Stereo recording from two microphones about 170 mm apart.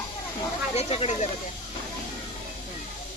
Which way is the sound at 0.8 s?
35° left (ahead or behind).